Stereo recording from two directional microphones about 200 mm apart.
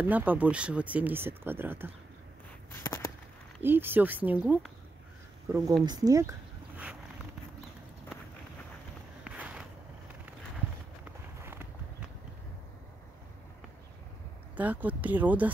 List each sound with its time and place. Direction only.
0.0 s speech: 10° right (ahead or behind)
2.7 s a sound: 15° left (ahead or behind)
3.6 s speech: 10° right (ahead or behind)
9.2 s walk: 5° right (ahead or behind)
14.6 s speech: 10° right (ahead or behind)